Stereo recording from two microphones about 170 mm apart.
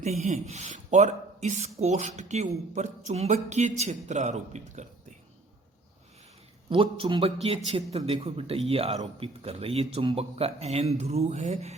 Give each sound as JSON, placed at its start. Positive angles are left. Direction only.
{"t": 0.0, "sound": "speech", "side_deg": -45}
{"t": 6.7, "sound": "speech", "side_deg": -30}